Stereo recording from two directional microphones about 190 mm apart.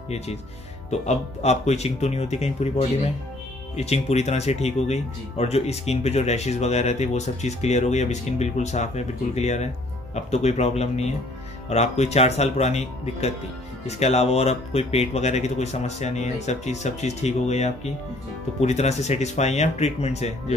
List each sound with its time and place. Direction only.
0.8 s speech: 35° left (ahead or behind)